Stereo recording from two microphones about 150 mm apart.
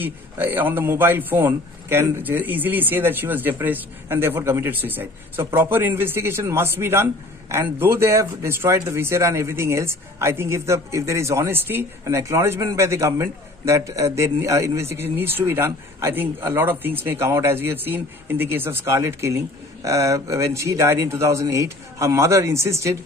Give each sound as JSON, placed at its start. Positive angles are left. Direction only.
{"t": 0.0, "sound": "a man's voice", "side_deg": -15}